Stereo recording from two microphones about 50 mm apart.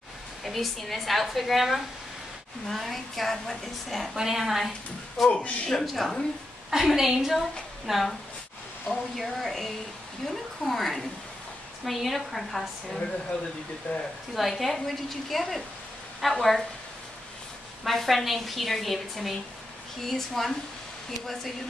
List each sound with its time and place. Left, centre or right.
0.4 s a woman's voice: centre
5.3 s a man's voice: left
5.7 s a woman's voice: centre
13.9 s speech: left
14.5 s a woman's voice: centre
17.8 s a woman's voice: centre